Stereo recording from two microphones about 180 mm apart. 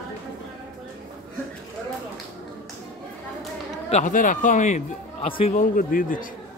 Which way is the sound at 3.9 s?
45° left (ahead or behind).